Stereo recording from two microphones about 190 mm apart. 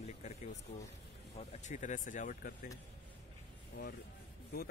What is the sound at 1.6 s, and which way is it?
Speech, 40° left (ahead or behind).